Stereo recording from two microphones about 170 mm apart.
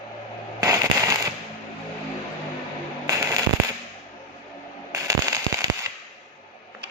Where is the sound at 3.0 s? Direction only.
20° right (ahead or behind).